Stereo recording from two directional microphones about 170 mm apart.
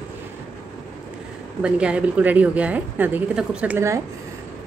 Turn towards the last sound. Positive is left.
turn(degrees=-10)  # may be behind; listen again after turning